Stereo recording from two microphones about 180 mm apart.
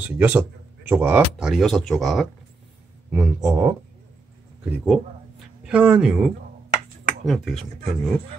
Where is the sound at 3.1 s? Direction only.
10° right (ahead or behind).